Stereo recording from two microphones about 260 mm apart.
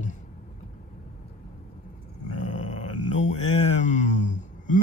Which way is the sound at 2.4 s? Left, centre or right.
Left.